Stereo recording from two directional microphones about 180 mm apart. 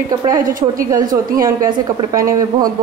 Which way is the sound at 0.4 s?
50° right (ahead or behind).